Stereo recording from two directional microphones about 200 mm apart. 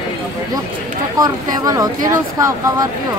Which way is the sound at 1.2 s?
20° right (ahead or behind).